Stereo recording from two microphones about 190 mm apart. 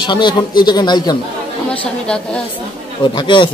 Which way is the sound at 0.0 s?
25° left (ahead or behind).